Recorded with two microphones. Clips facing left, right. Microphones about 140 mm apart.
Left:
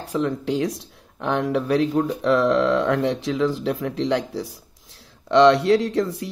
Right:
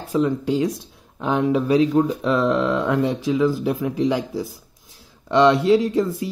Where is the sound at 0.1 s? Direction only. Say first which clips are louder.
Right 3 dB; centre (ahead or behind).